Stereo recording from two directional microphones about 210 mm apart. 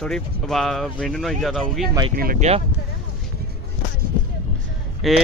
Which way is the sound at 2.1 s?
45° right (ahead or behind).